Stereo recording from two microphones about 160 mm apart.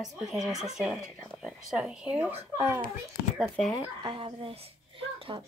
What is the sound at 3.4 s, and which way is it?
Speech, 5° left (ahead or behind).